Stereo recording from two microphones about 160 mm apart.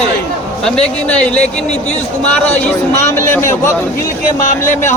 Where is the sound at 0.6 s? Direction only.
5° left (ahead or behind).